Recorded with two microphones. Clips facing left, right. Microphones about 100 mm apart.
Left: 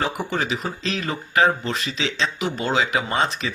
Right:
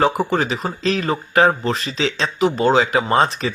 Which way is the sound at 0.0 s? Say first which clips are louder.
Right 7 dB; 35° right (ahead or behind).